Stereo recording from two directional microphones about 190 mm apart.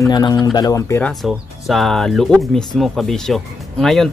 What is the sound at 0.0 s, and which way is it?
Speech, 20° left (ahead or behind).